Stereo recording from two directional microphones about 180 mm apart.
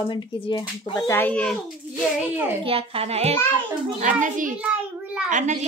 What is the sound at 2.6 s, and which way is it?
Speech, 30° right (ahead or behind).